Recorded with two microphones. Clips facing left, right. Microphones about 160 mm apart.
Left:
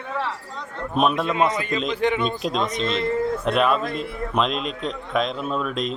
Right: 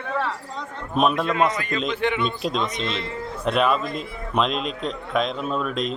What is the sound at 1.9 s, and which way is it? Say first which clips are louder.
Speech: left 2 dB; 40° left (ahead or behind).